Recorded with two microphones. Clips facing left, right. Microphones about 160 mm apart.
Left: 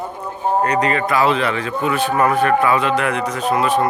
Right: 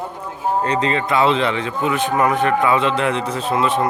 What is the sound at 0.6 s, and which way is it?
Speech, 25° right (ahead or behind).